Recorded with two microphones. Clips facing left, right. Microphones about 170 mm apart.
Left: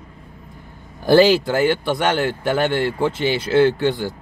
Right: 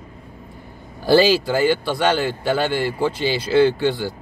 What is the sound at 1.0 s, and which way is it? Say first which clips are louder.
Speech: left 2 dB; 20° left (ahead or behind).